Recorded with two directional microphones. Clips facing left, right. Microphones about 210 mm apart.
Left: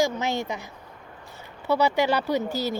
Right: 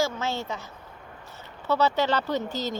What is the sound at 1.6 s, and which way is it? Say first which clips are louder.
Speech: left 2 dB; 15° left (ahead or behind).